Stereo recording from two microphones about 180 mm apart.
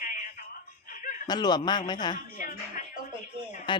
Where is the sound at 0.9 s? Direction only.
45° left (ahead or behind).